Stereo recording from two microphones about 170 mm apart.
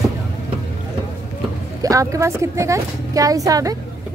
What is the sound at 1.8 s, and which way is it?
A woman's voice, 20° right (ahead or behind).